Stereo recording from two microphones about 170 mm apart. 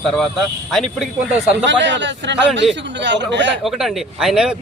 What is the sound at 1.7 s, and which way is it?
A man's voice, 90° right.